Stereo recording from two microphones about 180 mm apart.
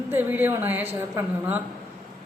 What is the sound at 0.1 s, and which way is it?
A woman's voice, 10° right (ahead or behind).